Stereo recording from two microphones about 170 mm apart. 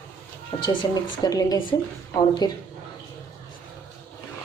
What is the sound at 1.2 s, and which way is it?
Speech, 20° left (ahead or behind).